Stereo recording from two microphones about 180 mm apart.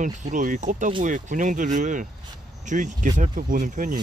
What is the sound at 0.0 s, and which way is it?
Speech, 45° right (ahead or behind).